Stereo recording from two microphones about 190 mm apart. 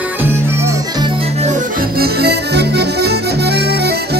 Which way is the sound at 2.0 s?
55° right (ahead or behind).